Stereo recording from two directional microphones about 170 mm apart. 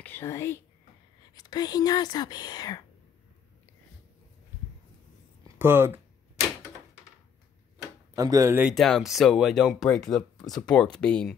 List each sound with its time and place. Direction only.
0.0 s speech: 15° left (ahead or behind)
5.6 s speech: 10° right (ahead or behind)
8.1 s speech: 20° right (ahead or behind)
8.7 s speech: centre (ahead or behind)